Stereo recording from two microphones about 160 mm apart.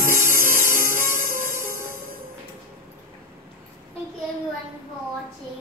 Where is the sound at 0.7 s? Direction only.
55° right (ahead or behind).